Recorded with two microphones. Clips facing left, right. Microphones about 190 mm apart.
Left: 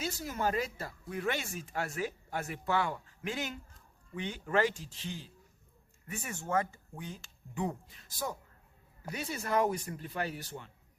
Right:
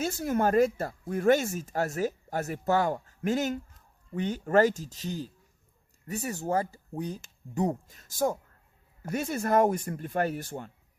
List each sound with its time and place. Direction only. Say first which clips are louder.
0.0 s speech: right 7 dB; 50° right (ahead or behind)